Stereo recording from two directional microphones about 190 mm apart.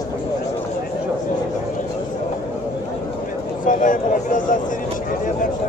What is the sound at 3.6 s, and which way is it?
Speech, 45° left (ahead or behind).